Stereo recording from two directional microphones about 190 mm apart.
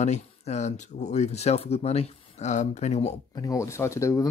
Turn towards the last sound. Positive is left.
turn(degrees=15)  # may be behind; listen again after turning